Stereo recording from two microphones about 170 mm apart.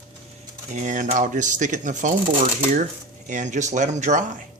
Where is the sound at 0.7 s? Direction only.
45° right (ahead or behind).